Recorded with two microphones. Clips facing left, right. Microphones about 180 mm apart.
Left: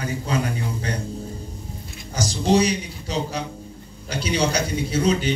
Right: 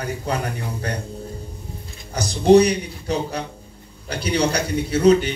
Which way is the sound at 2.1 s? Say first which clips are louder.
Right 6 dB; 60° right (ahead or behind).